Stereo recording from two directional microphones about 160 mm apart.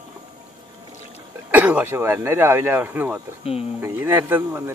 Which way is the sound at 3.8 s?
15° right (ahead or behind).